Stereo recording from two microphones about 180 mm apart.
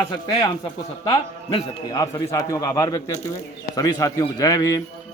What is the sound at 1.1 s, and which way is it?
A man's voice, 20° left (ahead or behind).